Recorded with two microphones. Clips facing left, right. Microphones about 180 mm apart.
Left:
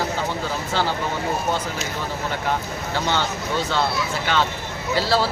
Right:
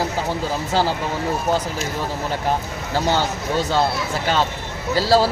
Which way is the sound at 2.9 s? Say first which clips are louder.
Right 4 dB; 40° right (ahead or behind).